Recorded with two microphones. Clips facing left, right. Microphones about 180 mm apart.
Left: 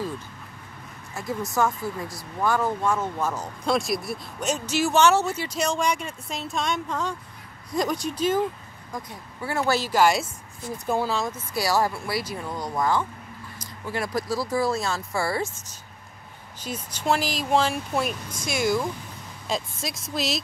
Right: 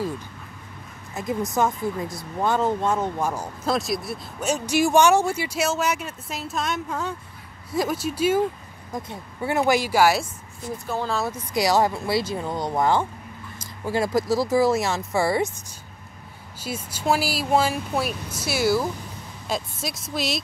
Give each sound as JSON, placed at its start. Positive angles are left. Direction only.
{"t": 1.2, "sound": "speech", "side_deg": -20}
{"t": 3.6, "sound": "speech", "side_deg": 0}
{"t": 8.9, "sound": "speech", "side_deg": -25}
{"t": 11.3, "sound": "speech", "side_deg": -20}
{"t": 16.5, "sound": "speech", "side_deg": -10}